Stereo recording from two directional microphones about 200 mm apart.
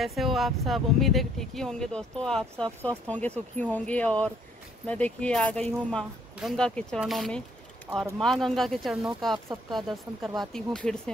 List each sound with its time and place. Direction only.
0.0 s speech: centre (ahead or behind)